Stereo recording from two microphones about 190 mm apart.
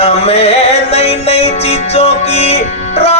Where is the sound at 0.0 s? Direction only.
30° left (ahead or behind).